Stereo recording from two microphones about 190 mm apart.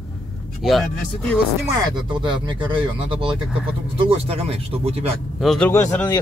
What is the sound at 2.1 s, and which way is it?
Speech, 25° right (ahead or behind).